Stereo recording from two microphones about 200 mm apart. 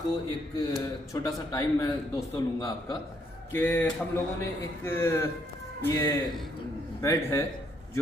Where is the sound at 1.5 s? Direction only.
20° left (ahead or behind).